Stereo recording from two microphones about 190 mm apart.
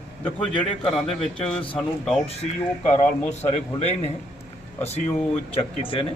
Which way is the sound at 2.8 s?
35° left (ahead or behind).